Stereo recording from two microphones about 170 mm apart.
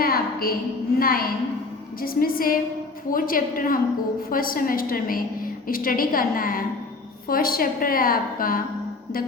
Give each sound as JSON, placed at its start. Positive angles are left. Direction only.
{"t": 0.0, "sound": "a woman's voice", "side_deg": 60}